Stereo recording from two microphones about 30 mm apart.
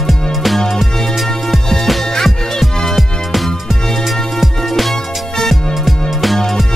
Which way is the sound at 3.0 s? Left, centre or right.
Centre.